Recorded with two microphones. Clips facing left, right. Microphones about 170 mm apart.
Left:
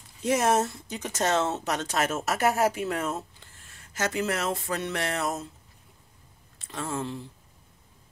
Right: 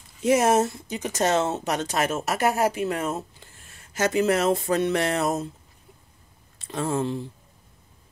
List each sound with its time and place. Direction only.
0.2 s speech: 5° right (ahead or behind)
3.1 s speech: 15° right (ahead or behind); by 5.5 s 30° right (ahead or behind)
6.7 s speech: 30° right (ahead or behind)